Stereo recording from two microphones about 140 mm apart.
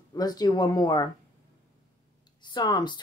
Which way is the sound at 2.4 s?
30° left (ahead or behind).